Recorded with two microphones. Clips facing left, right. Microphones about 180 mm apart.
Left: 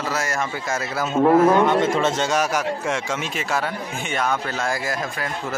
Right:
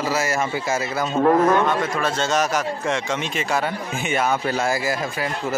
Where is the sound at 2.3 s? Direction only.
10° left (ahead or behind).